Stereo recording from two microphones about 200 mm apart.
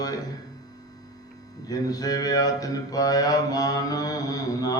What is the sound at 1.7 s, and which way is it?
Mantra, 20° left (ahead or behind).